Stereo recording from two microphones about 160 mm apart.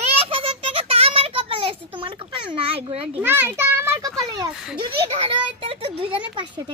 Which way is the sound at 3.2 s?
15° right (ahead or behind).